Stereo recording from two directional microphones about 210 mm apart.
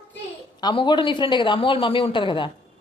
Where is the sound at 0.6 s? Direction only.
20° left (ahead or behind).